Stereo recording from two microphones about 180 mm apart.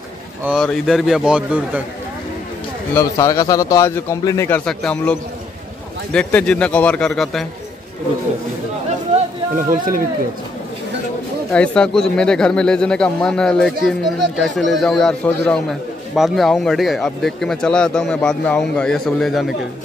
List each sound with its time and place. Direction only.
0.5 s speech: centre (ahead or behind)
2.9 s a man's voice: 15° left (ahead or behind)
6.1 s speech: 5° left (ahead or behind)
9.6 s speech: 50° right (ahead or behind)
11.5 s a man's voice: 5° left (ahead or behind)